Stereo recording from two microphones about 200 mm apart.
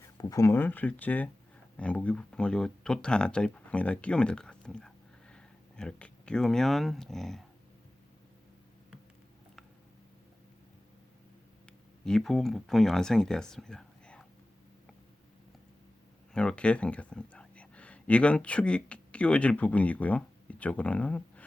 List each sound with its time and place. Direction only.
0.2 s speech: 15° left (ahead or behind); by 7.4 s centre (ahead or behind)
12.0 s speech: centre (ahead or behind)
16.3 s speech: 5° left (ahead or behind)